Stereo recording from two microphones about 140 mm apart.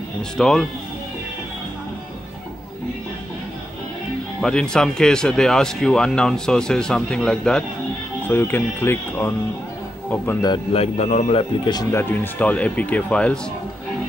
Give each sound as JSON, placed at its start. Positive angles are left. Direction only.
{"t": 0.4, "sound": "speech", "side_deg": 5}
{"t": 4.4, "sound": "speech", "side_deg": 5}
{"t": 10.7, "sound": "speech", "side_deg": 45}
{"t": 11.9, "sound": "speech", "side_deg": 15}